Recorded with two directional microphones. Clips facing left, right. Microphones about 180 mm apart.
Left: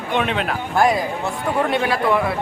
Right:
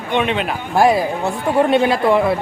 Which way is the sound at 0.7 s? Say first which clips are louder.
Right 4 dB; 25° right (ahead or behind).